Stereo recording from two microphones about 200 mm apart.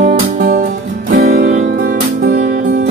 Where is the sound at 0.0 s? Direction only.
40° right (ahead or behind).